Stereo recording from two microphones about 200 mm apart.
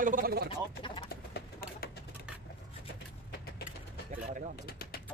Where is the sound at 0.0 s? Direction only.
45° right (ahead or behind).